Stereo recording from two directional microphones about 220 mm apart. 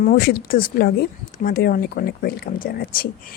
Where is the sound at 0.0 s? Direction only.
45° left (ahead or behind).